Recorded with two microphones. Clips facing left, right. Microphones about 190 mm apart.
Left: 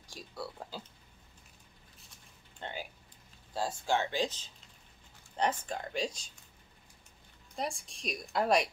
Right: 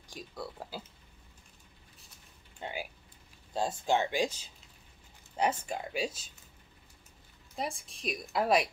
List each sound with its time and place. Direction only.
0.3 s speech: 5° left (ahead or behind)
2.6 s a sound: 10° right (ahead or behind)
3.5 s speech: 20° right (ahead or behind)
7.5 s a woman's voice: centre (ahead or behind)